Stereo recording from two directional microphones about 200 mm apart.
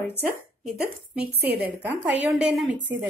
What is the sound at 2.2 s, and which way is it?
Speech, 5° right (ahead or behind).